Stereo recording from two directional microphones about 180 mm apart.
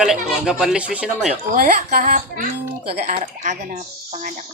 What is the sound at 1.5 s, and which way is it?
A woman's voice, 50° right (ahead or behind).